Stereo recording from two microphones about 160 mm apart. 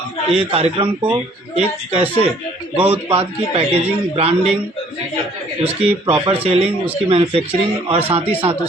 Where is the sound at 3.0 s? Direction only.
35° right (ahead or behind).